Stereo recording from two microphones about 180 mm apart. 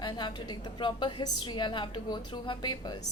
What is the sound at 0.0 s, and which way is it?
A woman's voice, 25° left (ahead or behind).